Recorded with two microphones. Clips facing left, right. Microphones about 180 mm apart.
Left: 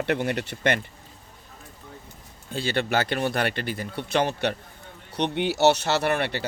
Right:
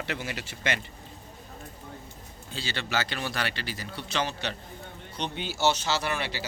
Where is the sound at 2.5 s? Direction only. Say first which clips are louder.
Left 7 dB; 55° left (ahead or behind).